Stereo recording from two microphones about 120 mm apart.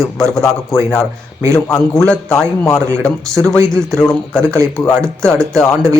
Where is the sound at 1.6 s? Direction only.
25° left (ahead or behind).